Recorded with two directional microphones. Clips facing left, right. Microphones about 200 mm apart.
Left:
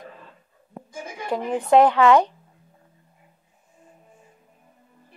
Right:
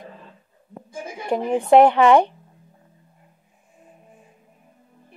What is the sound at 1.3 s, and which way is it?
A woman's voice, 15° right (ahead or behind).